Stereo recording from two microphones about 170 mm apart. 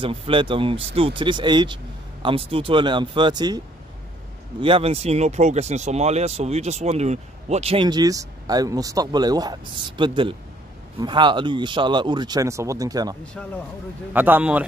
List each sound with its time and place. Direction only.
0.0 s speech: 30° right (ahead or behind)
13.2 s speech: 5° left (ahead or behind)
14.1 s a man's voice: 10° right (ahead or behind)